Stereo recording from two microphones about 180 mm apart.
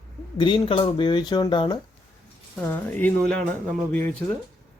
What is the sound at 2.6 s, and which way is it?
Speech, 10° left (ahead or behind).